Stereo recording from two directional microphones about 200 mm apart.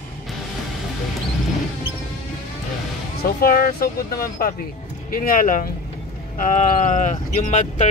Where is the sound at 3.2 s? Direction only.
45° left (ahead or behind).